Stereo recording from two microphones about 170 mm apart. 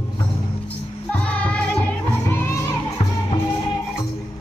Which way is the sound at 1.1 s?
5° left (ahead or behind).